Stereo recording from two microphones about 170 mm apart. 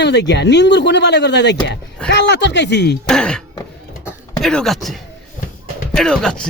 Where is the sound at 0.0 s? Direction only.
90° left.